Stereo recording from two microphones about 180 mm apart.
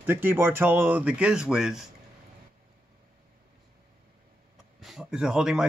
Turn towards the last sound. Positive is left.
turn(degrees=-5)  # may be behind; listen again after turning